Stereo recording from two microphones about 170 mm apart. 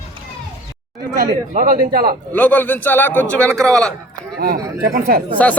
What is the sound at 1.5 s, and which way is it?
Speech, 60° right (ahead or behind).